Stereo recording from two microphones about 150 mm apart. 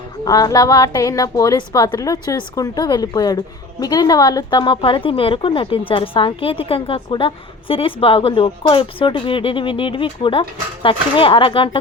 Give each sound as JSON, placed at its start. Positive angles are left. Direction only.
{"t": 0.3, "sound": "a woman's voice", "side_deg": 25}